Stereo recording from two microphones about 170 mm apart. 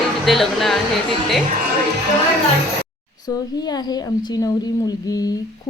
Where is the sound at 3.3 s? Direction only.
25° left (ahead or behind).